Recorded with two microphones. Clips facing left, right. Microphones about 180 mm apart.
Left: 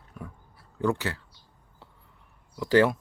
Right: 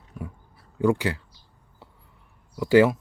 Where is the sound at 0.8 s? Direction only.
10° right (ahead or behind).